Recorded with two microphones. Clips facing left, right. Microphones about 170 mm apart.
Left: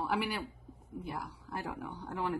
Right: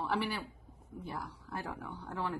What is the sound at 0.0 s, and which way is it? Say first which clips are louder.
A woman's voice: left 1 dB; 10° left (ahead or behind).